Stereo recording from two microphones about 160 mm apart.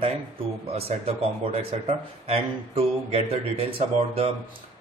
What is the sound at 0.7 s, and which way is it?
Speech, 40° right (ahead or behind).